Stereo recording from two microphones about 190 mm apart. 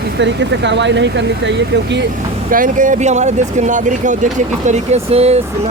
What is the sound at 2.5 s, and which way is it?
Speech, 45° right (ahead or behind).